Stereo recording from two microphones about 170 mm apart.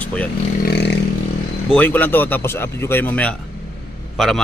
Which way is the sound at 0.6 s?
80° left.